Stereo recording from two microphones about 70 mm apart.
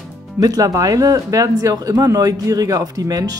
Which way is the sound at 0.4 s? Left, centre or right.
Right.